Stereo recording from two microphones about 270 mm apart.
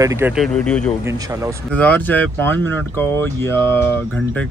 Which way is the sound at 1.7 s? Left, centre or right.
Centre.